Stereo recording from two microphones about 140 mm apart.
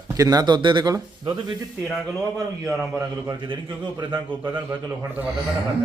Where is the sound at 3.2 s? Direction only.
30° right (ahead or behind).